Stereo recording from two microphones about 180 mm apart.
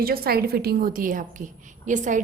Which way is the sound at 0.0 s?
55° right (ahead or behind).